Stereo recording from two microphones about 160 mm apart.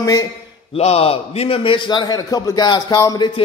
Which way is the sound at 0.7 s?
40° left (ahead or behind).